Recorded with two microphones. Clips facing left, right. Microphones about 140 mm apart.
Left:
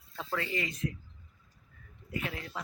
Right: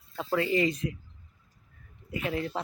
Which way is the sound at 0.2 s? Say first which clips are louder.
Right 9 dB; 15° right (ahead or behind).